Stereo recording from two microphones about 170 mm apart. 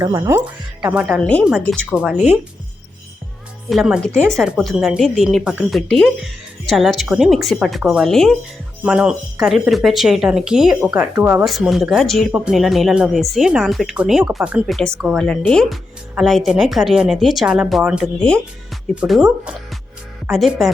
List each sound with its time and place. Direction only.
0.0 s speech: 20° right (ahead or behind)
1.2 s a woman's voice: 10° left (ahead or behind)
1.9 s speech: 5° right (ahead or behind)
3.7 s speech: 5° right (ahead or behind)
11.4 s speech: centre (ahead or behind)